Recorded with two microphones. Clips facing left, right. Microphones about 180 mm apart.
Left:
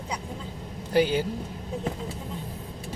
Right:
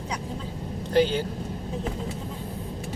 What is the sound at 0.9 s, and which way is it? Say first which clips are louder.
Speech: right 1 dB; 10° left (ahead or behind).